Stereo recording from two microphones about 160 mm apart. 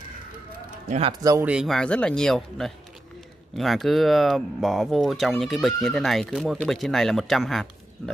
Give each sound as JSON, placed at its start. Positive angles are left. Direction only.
{"t": 0.8, "sound": "speech", "side_deg": -40}
{"t": 1.4, "sound": "speech", "side_deg": -5}